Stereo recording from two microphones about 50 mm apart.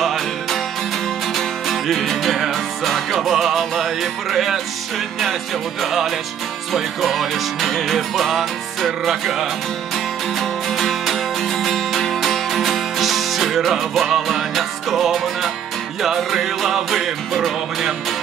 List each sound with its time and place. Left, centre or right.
0.0 s music: centre
5.8 s music: centre